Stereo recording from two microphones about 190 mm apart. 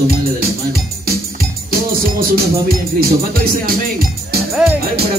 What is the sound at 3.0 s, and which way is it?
Music, 50° right (ahead or behind).